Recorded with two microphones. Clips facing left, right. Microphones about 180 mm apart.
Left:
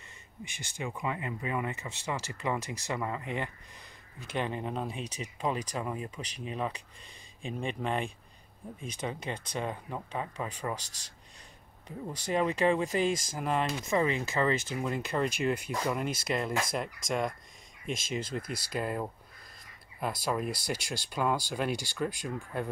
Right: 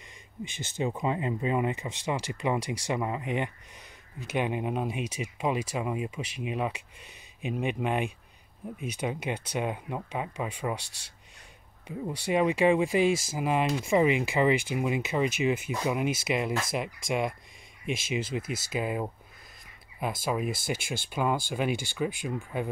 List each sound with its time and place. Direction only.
0.5 s speech: 20° right (ahead or behind)
12.3 s speech: 10° right (ahead or behind)